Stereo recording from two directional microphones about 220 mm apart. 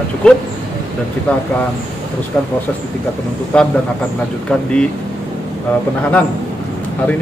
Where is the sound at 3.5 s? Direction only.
5° left (ahead or behind).